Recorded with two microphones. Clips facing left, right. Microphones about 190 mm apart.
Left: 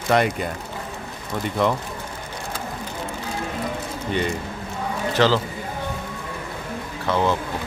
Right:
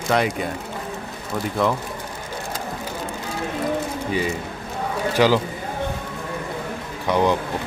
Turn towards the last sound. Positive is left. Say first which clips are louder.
# right 2 dB
turn(degrees=-15)  # may be behind; listen again after turning